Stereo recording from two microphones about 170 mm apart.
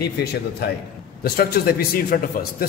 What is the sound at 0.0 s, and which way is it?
A man's voice, 70° left (ahead or behind).